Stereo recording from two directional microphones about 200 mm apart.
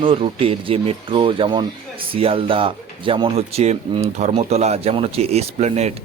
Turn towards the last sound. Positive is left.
turn(degrees=-35)  # may be behind; listen again after turning